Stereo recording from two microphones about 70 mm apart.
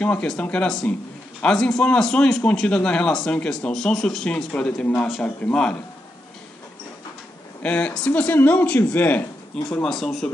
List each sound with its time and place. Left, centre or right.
0.0 s a man's voice: centre
7.6 s speech: centre
9.7 s a man's voice: centre